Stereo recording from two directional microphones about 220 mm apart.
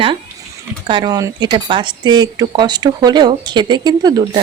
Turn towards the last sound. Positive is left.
turn(degrees=-20)  # may be behind; listen again after turning